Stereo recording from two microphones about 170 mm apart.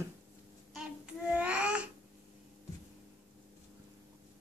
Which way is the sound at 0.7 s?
5° right (ahead or behind).